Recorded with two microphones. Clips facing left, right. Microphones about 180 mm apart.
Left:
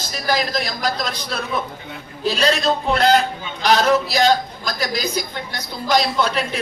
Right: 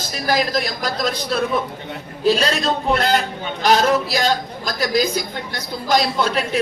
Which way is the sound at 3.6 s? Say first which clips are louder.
Even; 45° right (ahead or behind).